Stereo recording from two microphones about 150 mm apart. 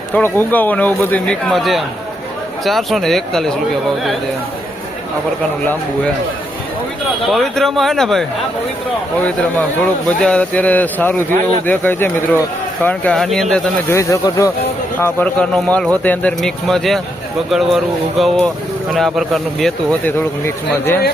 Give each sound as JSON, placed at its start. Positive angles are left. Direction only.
{"t": 0.1, "sound": "speech", "side_deg": 10}
{"t": 7.2, "sound": "speech", "side_deg": 0}
{"t": 13.9, "sound": "speech", "side_deg": 20}
{"t": 20.1, "sound": "speech", "side_deg": 15}